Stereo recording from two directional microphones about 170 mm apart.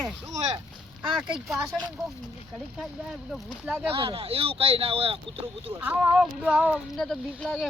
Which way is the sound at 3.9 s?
35° right (ahead or behind).